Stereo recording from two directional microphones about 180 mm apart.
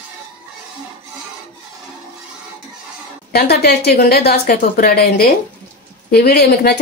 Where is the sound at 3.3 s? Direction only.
60° left (ahead or behind).